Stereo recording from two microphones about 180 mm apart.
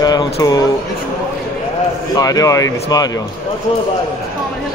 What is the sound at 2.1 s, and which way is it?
Speech, 20° left (ahead or behind).